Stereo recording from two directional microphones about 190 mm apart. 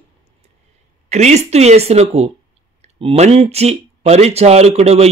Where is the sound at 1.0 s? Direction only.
35° right (ahead or behind).